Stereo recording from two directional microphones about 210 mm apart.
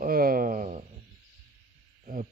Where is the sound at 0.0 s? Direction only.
45° right (ahead or behind).